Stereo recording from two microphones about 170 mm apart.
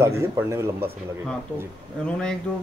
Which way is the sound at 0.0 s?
15° right (ahead or behind).